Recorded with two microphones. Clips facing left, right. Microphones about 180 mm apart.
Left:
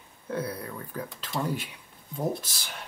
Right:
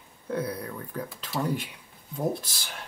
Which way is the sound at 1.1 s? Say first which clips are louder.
Right 2 dB; 5° right (ahead or behind).